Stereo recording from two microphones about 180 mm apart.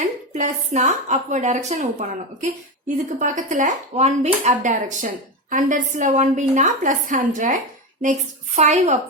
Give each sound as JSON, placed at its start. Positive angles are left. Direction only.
{"t": 0.3, "sound": "speech", "side_deg": -40}
{"t": 8.5, "sound": "speech", "side_deg": -40}